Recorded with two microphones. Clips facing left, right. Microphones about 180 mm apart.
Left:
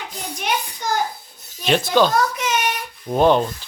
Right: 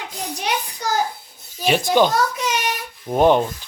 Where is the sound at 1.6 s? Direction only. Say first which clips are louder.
Even; 10° right (ahead or behind).